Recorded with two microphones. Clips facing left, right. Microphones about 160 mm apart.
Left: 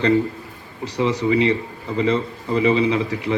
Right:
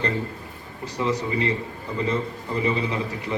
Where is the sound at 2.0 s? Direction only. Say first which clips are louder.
Left 5 dB; 90° left.